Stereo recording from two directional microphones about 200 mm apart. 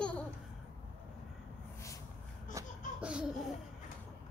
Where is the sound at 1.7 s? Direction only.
15° left (ahead or behind).